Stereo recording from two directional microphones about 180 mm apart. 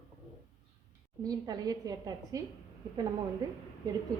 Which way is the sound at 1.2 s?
20° right (ahead or behind).